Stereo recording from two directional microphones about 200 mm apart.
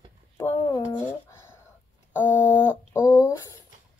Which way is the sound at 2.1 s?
10° left (ahead or behind).